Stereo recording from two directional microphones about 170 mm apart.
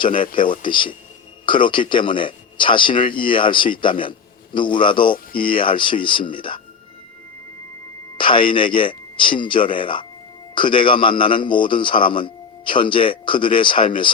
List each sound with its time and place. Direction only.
0.0 s a man's voice: 30° left (ahead or behind)
8.2 s a man's voice: 30° left (ahead or behind)